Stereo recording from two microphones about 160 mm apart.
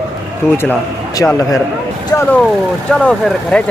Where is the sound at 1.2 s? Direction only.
10° left (ahead or behind).